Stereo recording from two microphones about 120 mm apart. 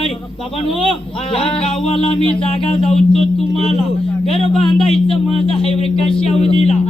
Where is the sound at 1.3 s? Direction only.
50° left (ahead or behind).